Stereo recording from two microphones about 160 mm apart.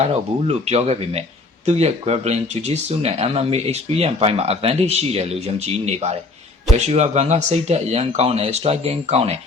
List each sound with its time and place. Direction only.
0.0 s speech: 40° right (ahead or behind)